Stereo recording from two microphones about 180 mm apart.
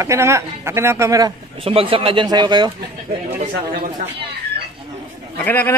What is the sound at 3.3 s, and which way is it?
Speech, 55° right (ahead or behind).